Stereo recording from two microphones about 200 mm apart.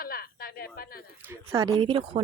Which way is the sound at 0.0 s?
50° left (ahead or behind).